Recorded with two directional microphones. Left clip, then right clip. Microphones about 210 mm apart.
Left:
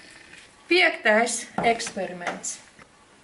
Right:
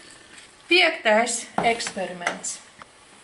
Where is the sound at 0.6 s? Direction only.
10° left (ahead or behind).